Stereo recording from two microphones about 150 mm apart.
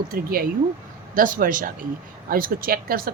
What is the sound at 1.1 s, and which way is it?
Speech, 65° right (ahead or behind).